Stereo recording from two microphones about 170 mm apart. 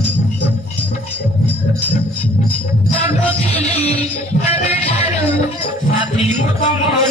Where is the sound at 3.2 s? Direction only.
10° left (ahead or behind).